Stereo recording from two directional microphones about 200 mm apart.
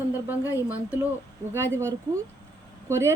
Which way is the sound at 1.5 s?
15° right (ahead or behind).